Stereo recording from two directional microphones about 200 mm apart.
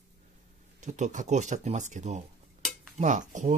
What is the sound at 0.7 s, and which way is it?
Speech, 35° right (ahead or behind).